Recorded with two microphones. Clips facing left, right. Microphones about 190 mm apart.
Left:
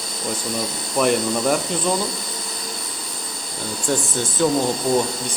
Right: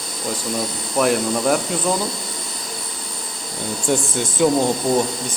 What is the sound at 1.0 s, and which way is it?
Speech, centre (ahead or behind).